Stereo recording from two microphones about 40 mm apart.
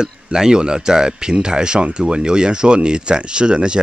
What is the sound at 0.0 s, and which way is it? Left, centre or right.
Speech, centre.